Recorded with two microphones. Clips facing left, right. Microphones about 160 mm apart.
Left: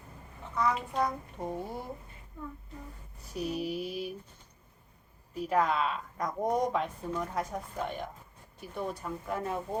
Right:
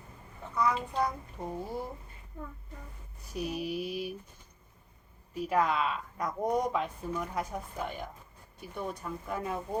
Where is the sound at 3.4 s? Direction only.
40° left (ahead or behind).